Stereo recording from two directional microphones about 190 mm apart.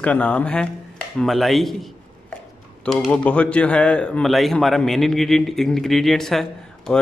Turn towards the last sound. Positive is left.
turn(degrees=0)  # may be behind; listen again after turning